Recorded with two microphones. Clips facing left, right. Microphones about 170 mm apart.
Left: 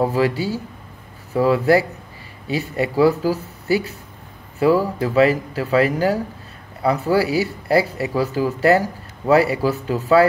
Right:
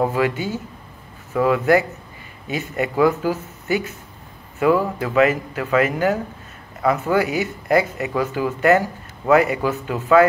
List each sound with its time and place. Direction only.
0.1 s speech: 35° left (ahead or behind)